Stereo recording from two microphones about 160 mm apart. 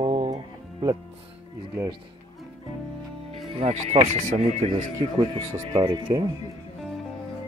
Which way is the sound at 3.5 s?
40° right (ahead or behind).